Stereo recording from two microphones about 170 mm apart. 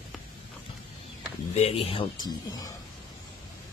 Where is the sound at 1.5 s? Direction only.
35° left (ahead or behind).